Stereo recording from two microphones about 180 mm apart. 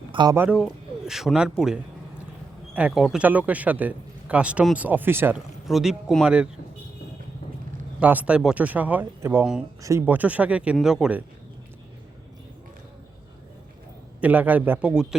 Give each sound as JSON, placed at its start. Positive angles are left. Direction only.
{"t": 0.1, "sound": "speech", "side_deg": -25}
{"t": 0.3, "sound": "a man's voice", "side_deg": -5}
{"t": 8.0, "sound": "speech", "side_deg": -10}
{"t": 14.2, "sound": "speech", "side_deg": -10}